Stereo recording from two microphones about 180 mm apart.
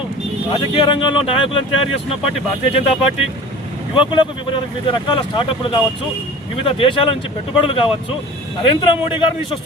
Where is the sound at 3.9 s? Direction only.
25° left (ahead or behind).